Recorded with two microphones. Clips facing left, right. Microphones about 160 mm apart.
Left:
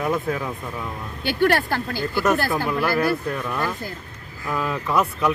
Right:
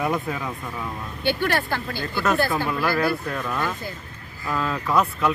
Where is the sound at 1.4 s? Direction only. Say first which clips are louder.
Left 5 dB; 45° left (ahead or behind).